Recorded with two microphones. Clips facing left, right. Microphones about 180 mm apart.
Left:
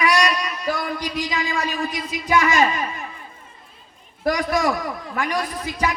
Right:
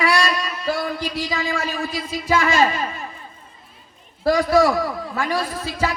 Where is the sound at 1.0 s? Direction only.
15° left (ahead or behind).